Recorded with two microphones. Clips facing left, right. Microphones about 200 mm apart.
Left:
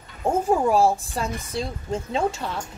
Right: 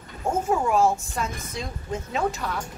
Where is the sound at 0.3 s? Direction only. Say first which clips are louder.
Left 3 dB; 35° left (ahead or behind).